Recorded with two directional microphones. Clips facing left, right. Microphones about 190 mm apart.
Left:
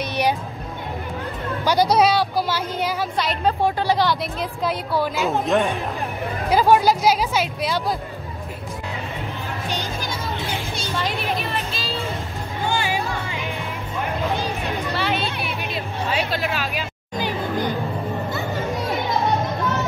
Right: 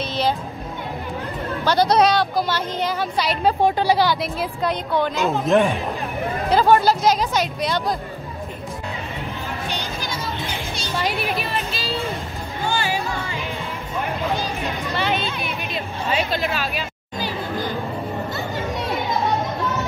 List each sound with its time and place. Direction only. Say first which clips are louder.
0.0 s a sound: even; 15° left (ahead or behind)
1.6 s speech: even; 10° left (ahead or behind)
3.6 s speech: right 3 dB; 15° right (ahead or behind)
4.0 s speech: right 1 dB; centre (ahead or behind)
6.5 s speech: even; 10° left (ahead or behind)
12.6 s music: even; 15° left (ahead or behind)
15.0 s a sound: right 2 dB; centre (ahead or behind)
15.4 s hubbub: even; centre (ahead or behind)
17.2 s music: left 2 dB; 20° left (ahead or behind)